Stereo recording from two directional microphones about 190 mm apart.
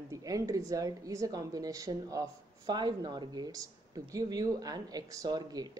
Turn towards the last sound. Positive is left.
turn(degrees=-20)  # may be behind; listen again after turning